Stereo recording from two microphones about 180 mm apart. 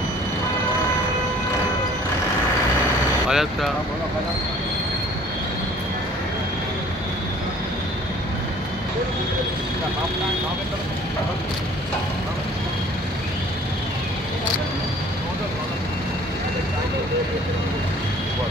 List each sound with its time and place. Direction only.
3.3 s speech: centre (ahead or behind)